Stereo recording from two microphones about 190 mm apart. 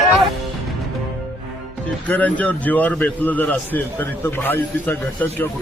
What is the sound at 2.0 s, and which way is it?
A man's voice, 10° left (ahead or behind).